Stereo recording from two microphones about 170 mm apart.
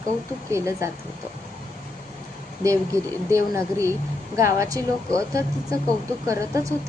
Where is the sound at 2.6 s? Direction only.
15° right (ahead or behind).